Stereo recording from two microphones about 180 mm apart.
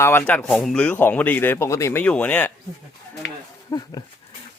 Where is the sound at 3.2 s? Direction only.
70° left (ahead or behind).